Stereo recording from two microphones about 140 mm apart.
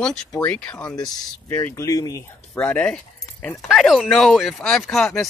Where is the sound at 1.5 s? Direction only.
15° left (ahead or behind).